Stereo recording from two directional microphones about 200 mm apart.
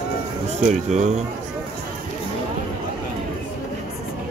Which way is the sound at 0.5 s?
35° right (ahead or behind).